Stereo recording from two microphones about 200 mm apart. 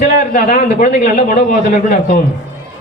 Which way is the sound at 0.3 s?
50° left (ahead or behind).